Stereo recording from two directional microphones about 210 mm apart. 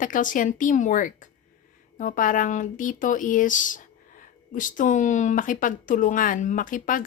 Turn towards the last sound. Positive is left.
turn(degrees=40)  # may be behind; listen again after turning